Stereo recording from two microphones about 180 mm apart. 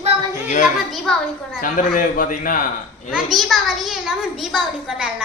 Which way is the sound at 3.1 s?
Centre (ahead or behind).